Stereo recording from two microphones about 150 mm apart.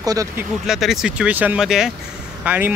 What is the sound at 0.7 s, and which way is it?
Speech, centre (ahead or behind).